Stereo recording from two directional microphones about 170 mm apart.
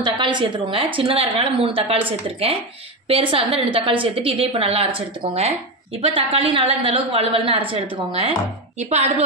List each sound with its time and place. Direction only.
0.0 s a woman's voice: 30° right (ahead or behind)